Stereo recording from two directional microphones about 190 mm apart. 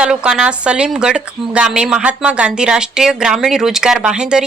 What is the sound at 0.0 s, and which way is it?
A woman's voice, 5° right (ahead or behind).